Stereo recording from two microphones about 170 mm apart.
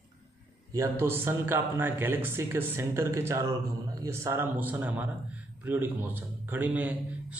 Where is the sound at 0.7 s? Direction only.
15° right (ahead or behind).